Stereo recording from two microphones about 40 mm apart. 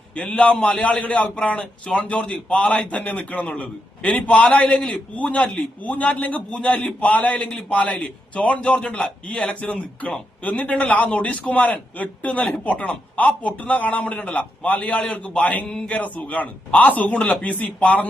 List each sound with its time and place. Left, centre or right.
0.1 s a man's voice: left
4.3 s a man's voice: left